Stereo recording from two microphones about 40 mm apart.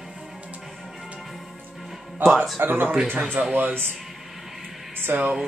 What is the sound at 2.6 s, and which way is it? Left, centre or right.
Speech, right.